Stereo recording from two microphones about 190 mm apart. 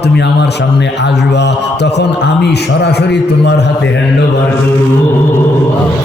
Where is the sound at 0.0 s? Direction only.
65° left (ahead or behind).